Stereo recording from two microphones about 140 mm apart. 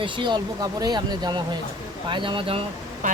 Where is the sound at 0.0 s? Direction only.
35° right (ahead or behind).